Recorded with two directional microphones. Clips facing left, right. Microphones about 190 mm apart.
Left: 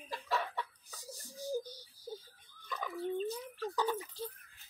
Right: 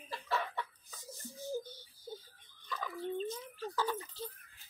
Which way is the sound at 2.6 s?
15° left (ahead or behind).